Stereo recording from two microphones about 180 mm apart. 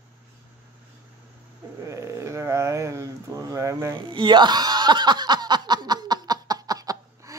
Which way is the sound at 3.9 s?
25° right (ahead or behind).